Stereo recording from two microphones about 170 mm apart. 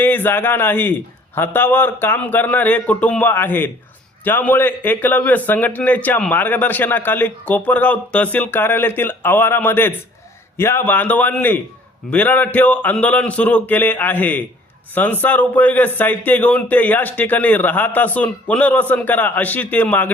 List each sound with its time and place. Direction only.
0.0 s speech: 10° left (ahead or behind)